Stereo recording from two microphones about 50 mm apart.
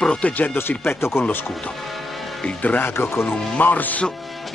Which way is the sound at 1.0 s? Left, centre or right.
Left.